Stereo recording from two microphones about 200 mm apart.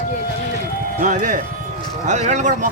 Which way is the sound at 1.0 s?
40° right (ahead or behind).